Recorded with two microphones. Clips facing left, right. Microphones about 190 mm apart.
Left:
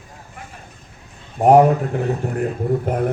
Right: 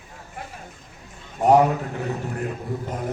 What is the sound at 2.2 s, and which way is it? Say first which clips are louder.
Speech: left 6 dB; 50° left (ahead or behind).